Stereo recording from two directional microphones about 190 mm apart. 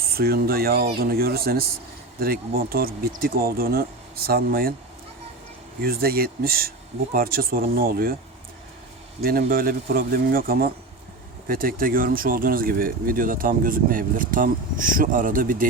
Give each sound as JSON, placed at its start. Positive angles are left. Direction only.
{"t": 0.1, "sound": "speech", "side_deg": -55}
{"t": 5.8, "sound": "speech", "side_deg": -50}
{"t": 9.2, "sound": "speech", "side_deg": -50}